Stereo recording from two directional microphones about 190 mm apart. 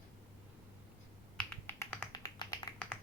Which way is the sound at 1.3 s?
10° left (ahead or behind).